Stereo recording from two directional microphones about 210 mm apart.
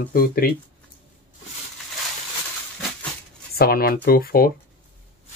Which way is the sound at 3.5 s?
45° left (ahead or behind).